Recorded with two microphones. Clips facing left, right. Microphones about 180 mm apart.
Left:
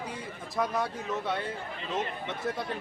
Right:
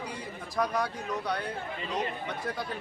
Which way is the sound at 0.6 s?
Centre (ahead or behind).